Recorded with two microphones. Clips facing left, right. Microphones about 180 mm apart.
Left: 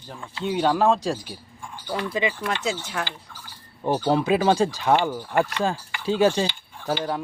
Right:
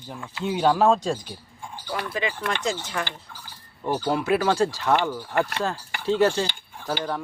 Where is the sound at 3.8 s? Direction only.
20° left (ahead or behind).